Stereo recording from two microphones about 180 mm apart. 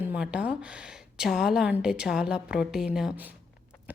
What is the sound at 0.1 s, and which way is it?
A woman's voice, 5° right (ahead or behind).